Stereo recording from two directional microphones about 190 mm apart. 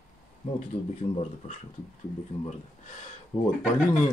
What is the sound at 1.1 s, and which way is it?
Speech, 40° left (ahead or behind).